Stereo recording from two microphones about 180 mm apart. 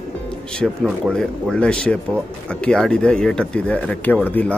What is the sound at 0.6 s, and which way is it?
Speech, centre (ahead or behind).